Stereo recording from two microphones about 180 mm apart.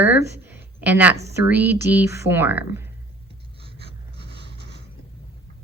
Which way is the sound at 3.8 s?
70° right (ahead or behind).